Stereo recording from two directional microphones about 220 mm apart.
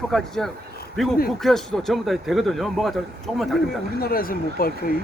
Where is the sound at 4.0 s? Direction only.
40° left (ahead or behind).